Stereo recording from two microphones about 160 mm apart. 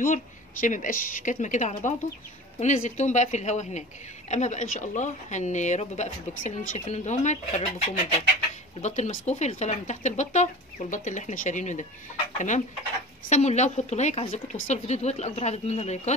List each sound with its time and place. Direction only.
0.0 s speech: 55° left (ahead or behind)
8.8 s speech: 50° left (ahead or behind)